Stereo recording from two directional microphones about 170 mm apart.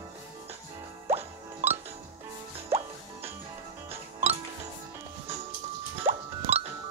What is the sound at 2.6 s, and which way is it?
Music, 35° right (ahead or behind).